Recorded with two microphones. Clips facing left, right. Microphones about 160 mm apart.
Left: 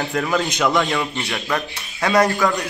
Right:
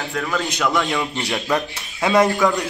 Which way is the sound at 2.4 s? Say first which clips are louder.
Right 1 dB; 20° right (ahead or behind).